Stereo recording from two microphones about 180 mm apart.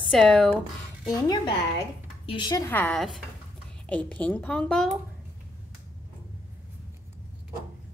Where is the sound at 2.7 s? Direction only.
5° left (ahead or behind).